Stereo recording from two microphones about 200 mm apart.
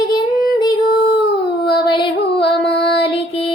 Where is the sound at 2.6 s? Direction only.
25° left (ahead or behind).